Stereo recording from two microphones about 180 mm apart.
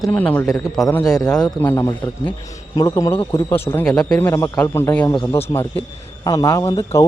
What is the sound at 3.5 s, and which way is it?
A man's voice, 10° left (ahead or behind).